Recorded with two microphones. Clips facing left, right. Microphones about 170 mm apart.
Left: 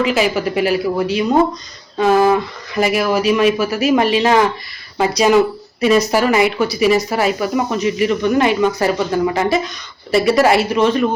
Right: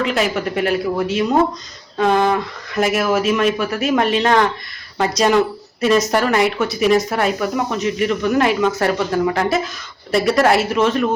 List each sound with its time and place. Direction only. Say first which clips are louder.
0.0 s speech: left 3 dB; 5° left (ahead or behind)